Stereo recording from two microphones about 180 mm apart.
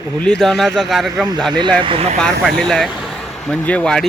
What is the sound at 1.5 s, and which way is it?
Speech, 25° right (ahead or behind).